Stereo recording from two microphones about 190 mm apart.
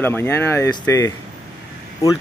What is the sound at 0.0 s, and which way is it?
Speech, 10° left (ahead or behind).